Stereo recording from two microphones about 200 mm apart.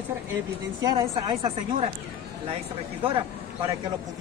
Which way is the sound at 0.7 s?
20° right (ahead or behind).